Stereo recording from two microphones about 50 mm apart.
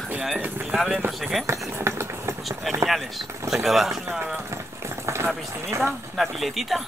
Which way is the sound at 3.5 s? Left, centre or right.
Centre.